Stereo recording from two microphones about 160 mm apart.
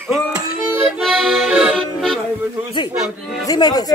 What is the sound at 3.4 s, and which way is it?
Speech, 25° left (ahead or behind).